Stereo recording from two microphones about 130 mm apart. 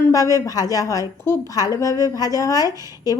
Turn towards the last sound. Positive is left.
turn(degrees=30)  # may be behind; listen again after turning